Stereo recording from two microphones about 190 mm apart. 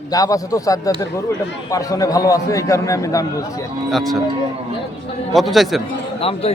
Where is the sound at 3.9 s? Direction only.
Centre (ahead or behind).